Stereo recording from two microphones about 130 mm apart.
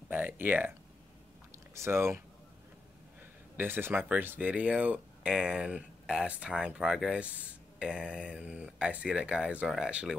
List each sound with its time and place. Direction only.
0.1 s speech: 15° right (ahead or behind)
3.5 s speech: 15° right (ahead or behind)